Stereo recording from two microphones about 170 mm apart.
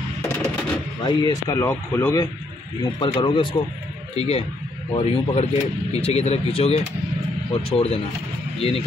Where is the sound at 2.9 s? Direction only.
30° left (ahead or behind).